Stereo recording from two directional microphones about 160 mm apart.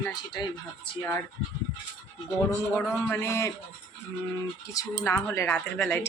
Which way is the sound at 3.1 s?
15° left (ahead or behind).